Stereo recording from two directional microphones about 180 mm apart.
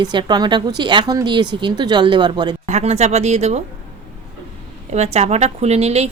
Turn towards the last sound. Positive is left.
turn(degrees=-35)  # may be behind; listen again after turning